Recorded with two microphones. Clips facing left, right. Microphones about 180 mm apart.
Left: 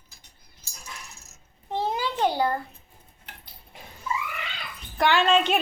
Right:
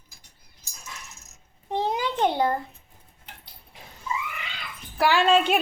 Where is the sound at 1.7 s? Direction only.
20° right (ahead or behind).